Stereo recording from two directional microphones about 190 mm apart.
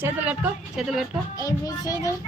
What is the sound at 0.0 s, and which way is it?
A woman's voice, 10° right (ahead or behind).